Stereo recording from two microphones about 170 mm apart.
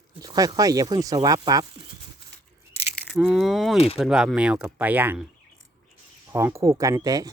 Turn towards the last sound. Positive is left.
turn(degrees=-20)  # may be behind; listen again after turning